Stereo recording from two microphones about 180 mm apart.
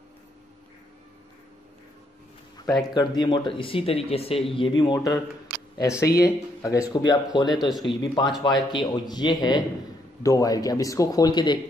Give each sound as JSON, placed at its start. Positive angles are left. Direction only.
{"t": 2.9, "sound": "speech", "side_deg": 25}
{"t": 7.5, "sound": "speech", "side_deg": 0}
{"t": 7.8, "sound": "speech", "side_deg": 25}